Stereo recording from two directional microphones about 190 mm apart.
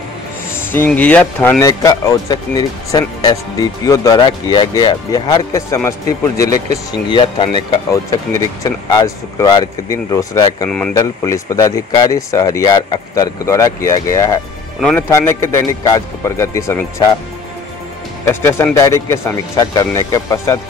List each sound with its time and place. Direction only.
0.6 s speech: 10° left (ahead or behind)
14.8 s speech: 5° left (ahead or behind)
18.2 s speech: 15° left (ahead or behind)